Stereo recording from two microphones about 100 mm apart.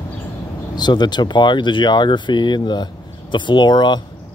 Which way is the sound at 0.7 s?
45° left (ahead or behind).